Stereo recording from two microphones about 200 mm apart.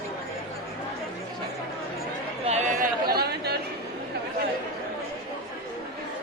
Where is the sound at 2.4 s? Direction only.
35° right (ahead or behind); by 3.5 s 55° right (ahead or behind).